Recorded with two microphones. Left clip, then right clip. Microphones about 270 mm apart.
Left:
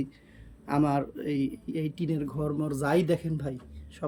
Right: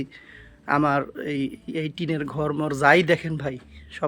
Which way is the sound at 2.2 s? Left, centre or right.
Right.